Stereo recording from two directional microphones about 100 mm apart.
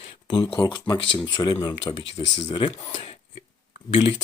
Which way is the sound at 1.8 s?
65° left (ahead or behind).